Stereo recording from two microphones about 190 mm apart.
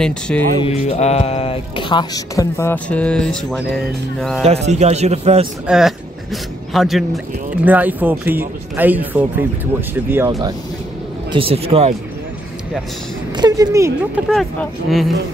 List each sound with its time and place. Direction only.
0.3 s speech: 5° left (ahead or behind)
0.7 s speech: 35° left (ahead or behind); by 4.5 s centre (ahead or behind)
4.5 s speech: 35° right (ahead or behind)
5.7 s speech: centre (ahead or behind)
11.3 s speech: 30° right (ahead or behind)
13.4 s speech: 20° right (ahead or behind)
14.3 s speech: centre (ahead or behind)